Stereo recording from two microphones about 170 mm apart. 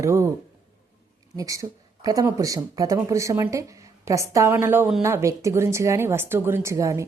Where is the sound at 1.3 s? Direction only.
20° right (ahead or behind).